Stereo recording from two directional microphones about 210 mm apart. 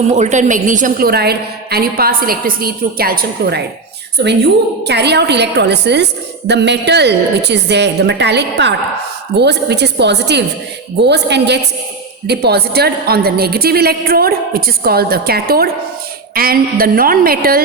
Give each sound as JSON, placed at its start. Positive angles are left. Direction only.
{"t": 0.1, "sound": "a woman's voice", "side_deg": -35}